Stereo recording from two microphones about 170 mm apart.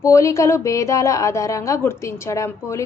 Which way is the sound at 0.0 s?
15° left (ahead or behind).